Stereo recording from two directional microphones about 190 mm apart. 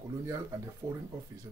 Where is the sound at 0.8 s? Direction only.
15° right (ahead or behind).